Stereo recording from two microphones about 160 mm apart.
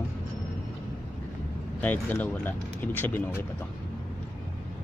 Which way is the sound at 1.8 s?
10° left (ahead or behind).